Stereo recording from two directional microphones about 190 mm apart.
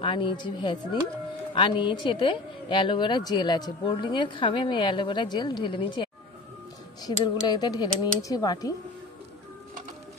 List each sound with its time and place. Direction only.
0.0 s speech: 25° left (ahead or behind)